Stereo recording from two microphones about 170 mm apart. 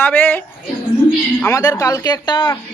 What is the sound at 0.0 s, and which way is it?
Speech, 10° left (ahead or behind).